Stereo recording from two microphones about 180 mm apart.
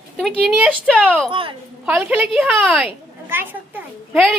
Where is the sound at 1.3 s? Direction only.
30° right (ahead or behind).